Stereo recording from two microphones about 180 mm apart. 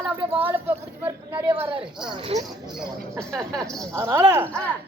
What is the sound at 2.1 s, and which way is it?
Speech, 35° right (ahead or behind).